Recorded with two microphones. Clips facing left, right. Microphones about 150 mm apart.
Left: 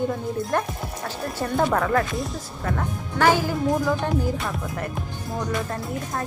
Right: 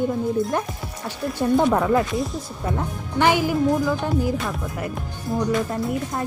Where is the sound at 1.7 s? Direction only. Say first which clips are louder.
Right 3 dB; 15° right (ahead or behind).